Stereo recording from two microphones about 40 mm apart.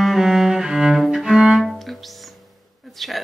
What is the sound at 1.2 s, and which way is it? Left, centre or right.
Cello, centre.